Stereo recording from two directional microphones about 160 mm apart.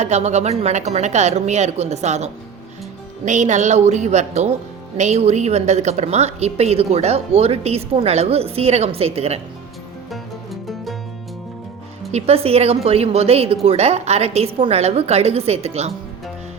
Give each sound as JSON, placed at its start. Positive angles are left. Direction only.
{"t": 0.0, "sound": "a woman's voice", "side_deg": -45}
{"t": 10.1, "sound": "music", "side_deg": 0}
{"t": 12.1, "sound": "a woman's voice", "side_deg": -40}